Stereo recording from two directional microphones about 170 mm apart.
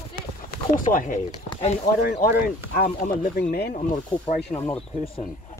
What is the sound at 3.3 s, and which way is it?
Speech, 65° left (ahead or behind).